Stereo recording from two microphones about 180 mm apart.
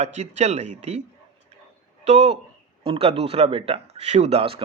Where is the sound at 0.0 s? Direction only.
40° right (ahead or behind).